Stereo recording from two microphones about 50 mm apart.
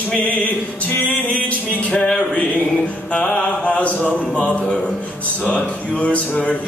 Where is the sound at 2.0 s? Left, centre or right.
Centre.